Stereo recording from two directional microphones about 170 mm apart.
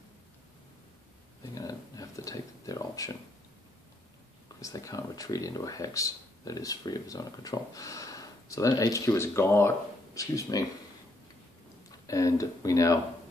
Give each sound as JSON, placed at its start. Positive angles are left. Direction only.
{"t": 1.4, "sound": "a sound", "side_deg": 20}
{"t": 4.6, "sound": "speech", "side_deg": 20}
{"t": 12.1, "sound": "speech", "side_deg": 20}